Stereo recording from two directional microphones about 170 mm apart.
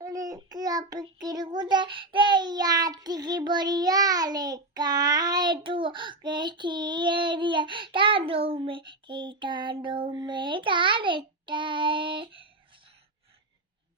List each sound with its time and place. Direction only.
0.0 s child singing: 20° right (ahead or behind)